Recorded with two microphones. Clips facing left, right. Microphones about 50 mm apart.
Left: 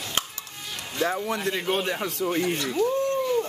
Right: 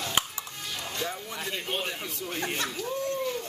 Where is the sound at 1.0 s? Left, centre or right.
Left.